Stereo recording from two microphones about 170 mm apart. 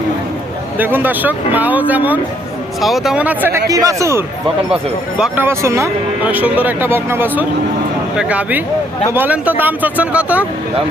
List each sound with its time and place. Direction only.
0.8 s speech: 10° right (ahead or behind)
5.2 s speech: 15° right (ahead or behind)